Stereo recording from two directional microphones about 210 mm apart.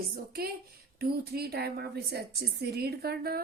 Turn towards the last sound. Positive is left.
turn(degrees=-50)  # may be behind; listen again after turning